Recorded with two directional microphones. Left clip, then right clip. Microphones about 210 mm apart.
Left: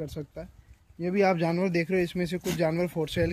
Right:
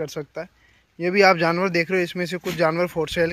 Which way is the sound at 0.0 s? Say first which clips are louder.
Right 8 dB; 35° right (ahead or behind).